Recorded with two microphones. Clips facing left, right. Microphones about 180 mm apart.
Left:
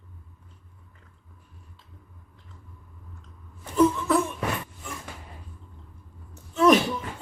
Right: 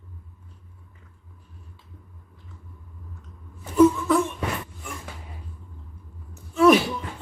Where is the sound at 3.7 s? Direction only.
5° right (ahead or behind).